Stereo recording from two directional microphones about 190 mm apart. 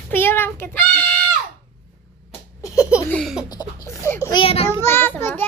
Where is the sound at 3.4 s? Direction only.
20° left (ahead or behind).